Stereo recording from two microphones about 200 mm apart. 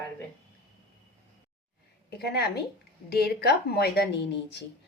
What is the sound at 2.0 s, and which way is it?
A woman's voice, 55° left (ahead or behind).